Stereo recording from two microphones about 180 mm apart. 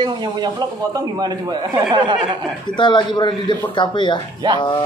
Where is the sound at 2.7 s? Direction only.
25° left (ahead or behind).